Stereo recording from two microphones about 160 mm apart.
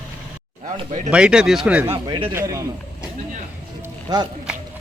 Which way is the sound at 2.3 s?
20° right (ahead or behind).